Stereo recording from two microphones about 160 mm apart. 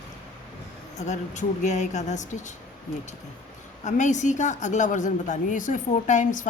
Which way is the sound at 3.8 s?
50° left (ahead or behind).